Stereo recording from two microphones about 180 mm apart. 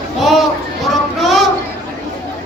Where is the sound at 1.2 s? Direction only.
Centre (ahead or behind).